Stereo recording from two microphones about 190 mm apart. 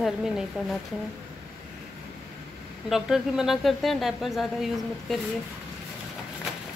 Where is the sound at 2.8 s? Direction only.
Centre (ahead or behind).